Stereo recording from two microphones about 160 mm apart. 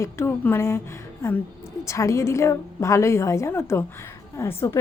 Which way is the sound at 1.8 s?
20° left (ahead or behind).